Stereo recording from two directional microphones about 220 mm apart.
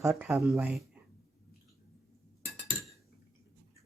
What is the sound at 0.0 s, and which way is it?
Speech, 5° right (ahead or behind).